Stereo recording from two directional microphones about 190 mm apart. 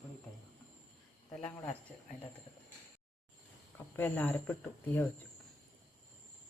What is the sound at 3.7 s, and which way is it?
Speech, 10° left (ahead or behind).